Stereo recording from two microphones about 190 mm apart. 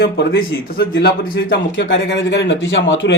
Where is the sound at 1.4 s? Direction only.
80° left.